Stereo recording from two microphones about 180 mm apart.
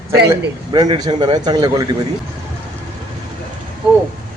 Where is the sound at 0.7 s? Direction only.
25° right (ahead or behind).